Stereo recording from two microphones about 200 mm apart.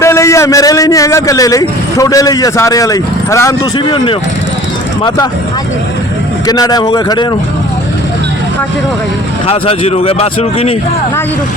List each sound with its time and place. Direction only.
0.0 s a man's voice: 15° left (ahead or behind)
6.5 s speech: 20° left (ahead or behind)
9.5 s speech: 30° left (ahead or behind)